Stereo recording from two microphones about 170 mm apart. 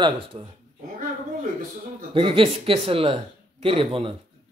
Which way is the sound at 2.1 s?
35° right (ahead or behind).